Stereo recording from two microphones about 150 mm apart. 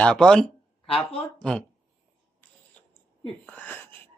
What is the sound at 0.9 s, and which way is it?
Speech, 35° left (ahead or behind).